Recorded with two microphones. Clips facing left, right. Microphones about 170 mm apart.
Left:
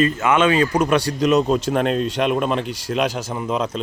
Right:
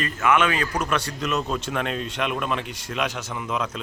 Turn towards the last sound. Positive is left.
turn(degrees=35)  # may be behind; listen again after turning